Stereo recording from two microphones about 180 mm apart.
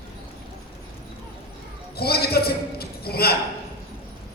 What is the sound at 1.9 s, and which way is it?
Basketball bounce, 60° left (ahead or behind).